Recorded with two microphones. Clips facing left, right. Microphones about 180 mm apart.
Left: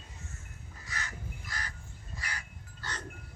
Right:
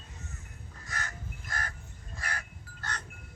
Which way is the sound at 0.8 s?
50° right (ahead or behind).